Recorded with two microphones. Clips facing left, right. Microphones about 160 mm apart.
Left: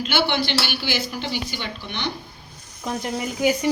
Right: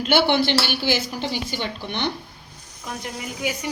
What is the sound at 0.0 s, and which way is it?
A woman's voice, 55° right (ahead or behind).